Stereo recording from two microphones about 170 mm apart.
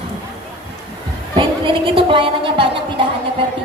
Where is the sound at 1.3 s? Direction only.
30° right (ahead or behind).